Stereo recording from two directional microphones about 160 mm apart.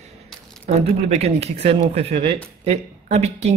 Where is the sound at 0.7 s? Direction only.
40° right (ahead or behind).